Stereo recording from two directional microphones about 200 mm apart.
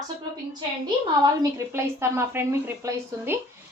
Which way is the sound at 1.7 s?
15° right (ahead or behind).